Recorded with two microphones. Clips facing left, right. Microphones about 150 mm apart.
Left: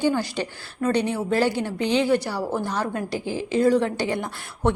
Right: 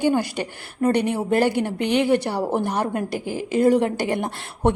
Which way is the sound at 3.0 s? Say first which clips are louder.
Right 1 dB; 50° right (ahead or behind).